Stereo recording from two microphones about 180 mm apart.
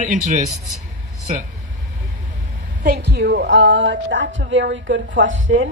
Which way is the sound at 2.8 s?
60° right (ahead or behind).